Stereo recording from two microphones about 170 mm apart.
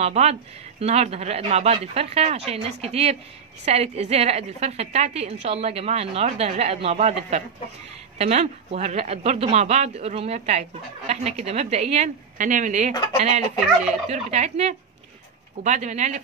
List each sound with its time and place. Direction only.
0.0 s speech: 40° right (ahead or behind)